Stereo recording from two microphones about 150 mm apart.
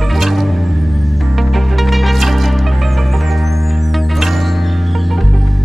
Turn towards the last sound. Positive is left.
turn(degrees=0)  # may be behind; listen again after turning